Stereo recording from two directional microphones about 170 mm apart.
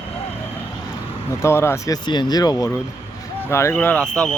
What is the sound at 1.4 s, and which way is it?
Speech, 15° left (ahead or behind).